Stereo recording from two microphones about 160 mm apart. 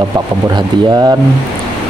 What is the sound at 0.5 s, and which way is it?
Speech, 25° right (ahead or behind).